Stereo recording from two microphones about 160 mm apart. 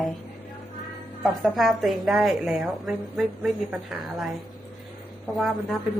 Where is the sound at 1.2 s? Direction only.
Centre (ahead or behind).